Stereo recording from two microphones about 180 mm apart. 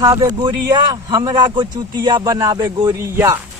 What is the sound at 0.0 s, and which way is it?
A man's voice, 20° right (ahead or behind).